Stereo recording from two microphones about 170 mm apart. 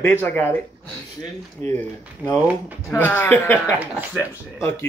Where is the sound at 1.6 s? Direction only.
10° left (ahead or behind).